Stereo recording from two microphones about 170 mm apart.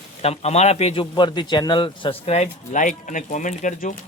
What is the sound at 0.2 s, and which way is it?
Speech, 40° left (ahead or behind).